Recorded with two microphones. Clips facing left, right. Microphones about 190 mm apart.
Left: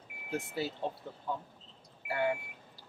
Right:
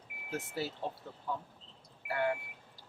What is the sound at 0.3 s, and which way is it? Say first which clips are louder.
Speech: left 2 dB; 15° left (ahead or behind).